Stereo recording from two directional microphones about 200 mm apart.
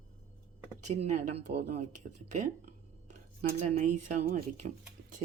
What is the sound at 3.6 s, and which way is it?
Speech, 40° right (ahead or behind).